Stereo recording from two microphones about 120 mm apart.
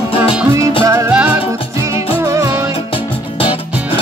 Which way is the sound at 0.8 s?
30° right (ahead or behind).